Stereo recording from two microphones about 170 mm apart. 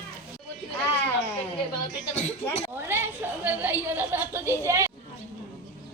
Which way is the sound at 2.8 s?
15° right (ahead or behind).